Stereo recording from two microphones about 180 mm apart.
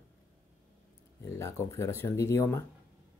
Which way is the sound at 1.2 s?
15° left (ahead or behind).